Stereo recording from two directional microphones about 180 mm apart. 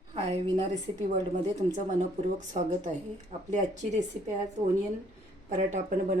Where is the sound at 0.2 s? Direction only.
30° right (ahead or behind).